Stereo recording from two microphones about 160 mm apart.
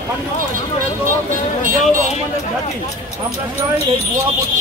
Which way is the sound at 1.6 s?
55° right (ahead or behind).